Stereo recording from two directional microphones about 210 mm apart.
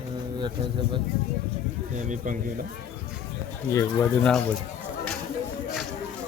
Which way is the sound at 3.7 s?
15° left (ahead or behind).